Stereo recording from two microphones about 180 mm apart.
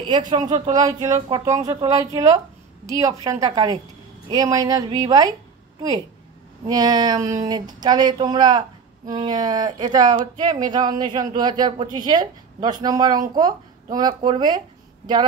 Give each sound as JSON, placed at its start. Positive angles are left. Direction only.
{"t": 0.7, "sound": "a woman's voice", "side_deg": -20}